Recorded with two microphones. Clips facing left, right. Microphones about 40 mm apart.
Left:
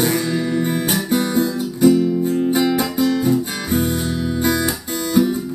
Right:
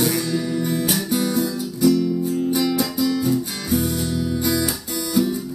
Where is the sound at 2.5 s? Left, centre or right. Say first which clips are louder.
Left 3 dB; left.